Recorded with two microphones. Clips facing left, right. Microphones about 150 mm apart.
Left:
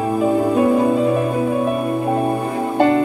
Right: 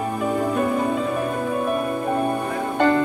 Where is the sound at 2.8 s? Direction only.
25° left (ahead or behind).